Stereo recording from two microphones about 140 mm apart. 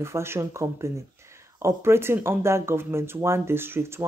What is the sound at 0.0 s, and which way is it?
Speech, 20° right (ahead or behind).